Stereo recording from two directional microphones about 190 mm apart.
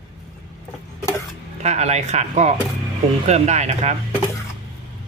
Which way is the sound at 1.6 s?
35° right (ahead or behind).